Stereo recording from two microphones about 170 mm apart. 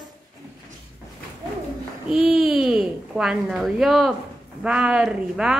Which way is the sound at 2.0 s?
Centre (ahead or behind).